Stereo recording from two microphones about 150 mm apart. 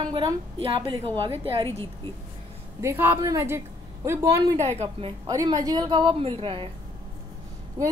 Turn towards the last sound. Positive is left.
turn(degrees=-25)  # may be behind; listen again after turning